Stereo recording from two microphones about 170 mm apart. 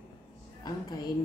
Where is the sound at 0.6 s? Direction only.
25° left (ahead or behind).